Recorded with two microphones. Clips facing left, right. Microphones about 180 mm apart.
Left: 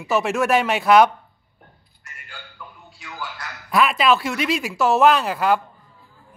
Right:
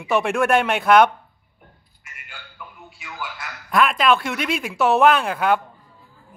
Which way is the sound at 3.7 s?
5° left (ahead or behind).